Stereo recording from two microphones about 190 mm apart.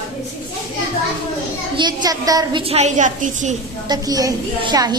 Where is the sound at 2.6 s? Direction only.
35° right (ahead or behind).